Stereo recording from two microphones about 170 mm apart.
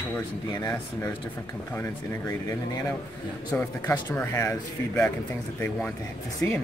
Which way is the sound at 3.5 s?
10° left (ahead or behind).